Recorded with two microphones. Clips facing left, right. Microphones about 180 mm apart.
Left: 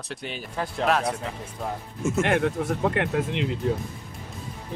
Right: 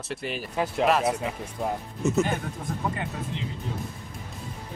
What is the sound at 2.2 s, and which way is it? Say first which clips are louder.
Speech: left 5 dB; 80° left.